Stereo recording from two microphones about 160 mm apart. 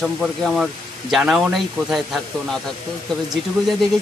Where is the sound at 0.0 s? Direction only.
Centre (ahead or behind).